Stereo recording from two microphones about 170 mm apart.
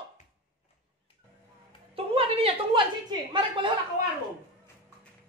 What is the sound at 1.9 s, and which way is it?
A woman's voice, 35° right (ahead or behind).